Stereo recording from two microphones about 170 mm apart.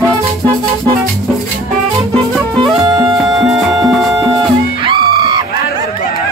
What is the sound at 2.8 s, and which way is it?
Music, 25° right (ahead or behind).